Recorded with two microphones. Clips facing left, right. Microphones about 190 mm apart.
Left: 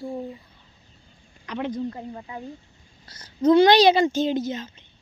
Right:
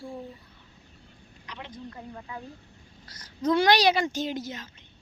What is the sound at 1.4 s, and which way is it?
Speech, 50° left (ahead or behind).